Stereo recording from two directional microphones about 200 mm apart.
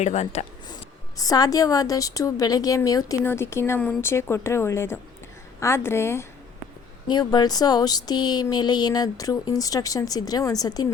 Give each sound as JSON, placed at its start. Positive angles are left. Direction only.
{"t": 0.0, "sound": "speech", "side_deg": 35}
{"t": 0.7, "sound": "a woman's voice", "side_deg": 20}